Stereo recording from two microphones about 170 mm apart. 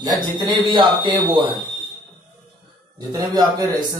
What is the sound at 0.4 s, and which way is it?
Speech, 25° right (ahead or behind).